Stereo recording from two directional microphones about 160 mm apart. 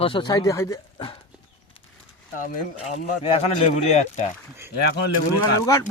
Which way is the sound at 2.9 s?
40° left (ahead or behind).